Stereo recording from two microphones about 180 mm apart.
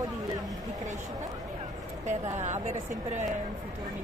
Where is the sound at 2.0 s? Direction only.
40° right (ahead or behind).